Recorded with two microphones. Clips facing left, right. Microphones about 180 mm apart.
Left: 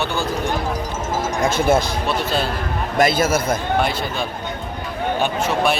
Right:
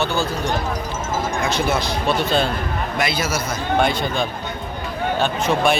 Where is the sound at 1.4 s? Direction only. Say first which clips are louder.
Left 7 dB; 50° left (ahead or behind).